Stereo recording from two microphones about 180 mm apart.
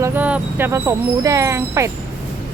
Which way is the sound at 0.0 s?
10° right (ahead or behind).